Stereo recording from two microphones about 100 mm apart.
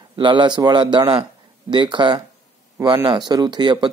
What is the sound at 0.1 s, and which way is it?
Speech, 55° right (ahead or behind).